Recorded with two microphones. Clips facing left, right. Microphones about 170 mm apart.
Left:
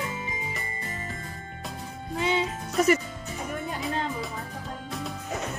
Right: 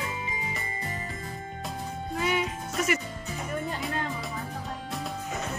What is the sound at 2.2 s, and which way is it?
Music, 25° left (ahead or behind).